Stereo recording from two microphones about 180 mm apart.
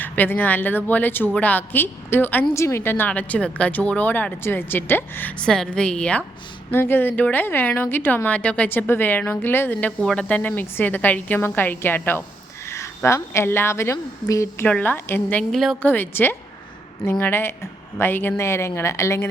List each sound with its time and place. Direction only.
0.0 s a woman's voice: 10° left (ahead or behind)